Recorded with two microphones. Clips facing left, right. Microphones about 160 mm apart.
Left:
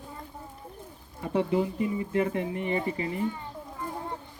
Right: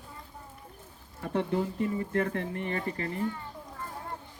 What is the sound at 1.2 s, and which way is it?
Speech, 10° left (ahead or behind).